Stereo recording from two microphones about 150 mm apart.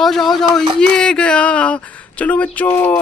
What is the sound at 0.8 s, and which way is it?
Speech, 5° left (ahead or behind).